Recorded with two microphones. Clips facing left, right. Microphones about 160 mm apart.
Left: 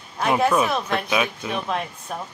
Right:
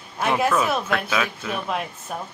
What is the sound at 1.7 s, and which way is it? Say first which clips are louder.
Speech: left 1 dB; 5° right (ahead or behind).